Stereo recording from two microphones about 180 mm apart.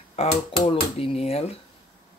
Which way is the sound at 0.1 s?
35° left (ahead or behind).